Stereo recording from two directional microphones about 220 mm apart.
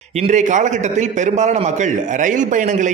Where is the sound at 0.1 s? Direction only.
30° right (ahead or behind).